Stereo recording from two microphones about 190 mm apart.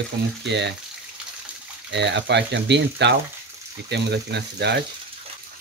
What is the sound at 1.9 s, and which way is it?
Speech, 65° right (ahead or behind).